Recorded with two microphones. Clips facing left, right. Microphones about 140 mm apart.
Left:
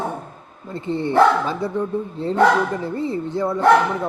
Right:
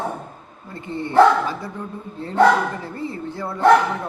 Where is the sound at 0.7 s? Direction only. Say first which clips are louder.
Right 1 dB; 25° left (ahead or behind).